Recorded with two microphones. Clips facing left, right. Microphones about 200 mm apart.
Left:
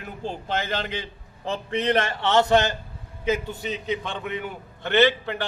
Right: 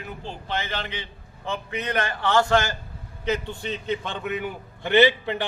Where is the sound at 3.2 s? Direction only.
5° left (ahead or behind).